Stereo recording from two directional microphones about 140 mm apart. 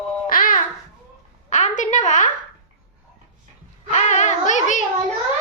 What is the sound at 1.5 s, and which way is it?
Speech, 55° left (ahead or behind).